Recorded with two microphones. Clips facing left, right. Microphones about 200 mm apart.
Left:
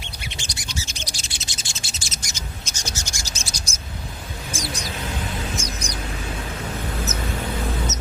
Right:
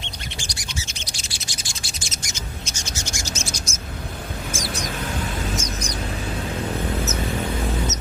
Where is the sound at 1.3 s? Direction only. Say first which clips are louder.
Right 1 dB; 20° left (ahead or behind).